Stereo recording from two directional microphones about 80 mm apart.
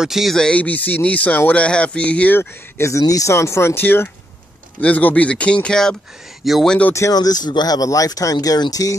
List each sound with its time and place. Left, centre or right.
0.0 s speech: centre
0.4 s speech: centre
2.8 s speech: left; by 6.7 s centre
6.9 s speech: left
7.2 s speech: left